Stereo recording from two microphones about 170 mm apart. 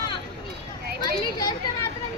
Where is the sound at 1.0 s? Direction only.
20° left (ahead or behind).